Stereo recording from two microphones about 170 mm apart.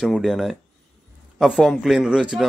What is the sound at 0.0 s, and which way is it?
Speech, centre (ahead or behind).